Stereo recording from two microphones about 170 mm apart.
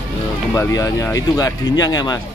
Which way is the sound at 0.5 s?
20° left (ahead or behind).